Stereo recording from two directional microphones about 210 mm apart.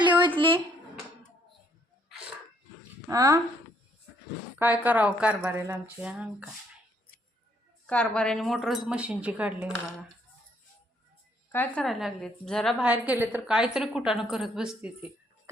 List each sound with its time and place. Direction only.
0.3 s a sound: 25° right (ahead or behind)
3.1 s a woman's voice: 15° right (ahead or behind)
4.5 s a woman's voice: 10° right (ahead or behind)
7.9 s a woman's voice: 5° left (ahead or behind)
11.5 s a woman's voice: 5° left (ahead or behind)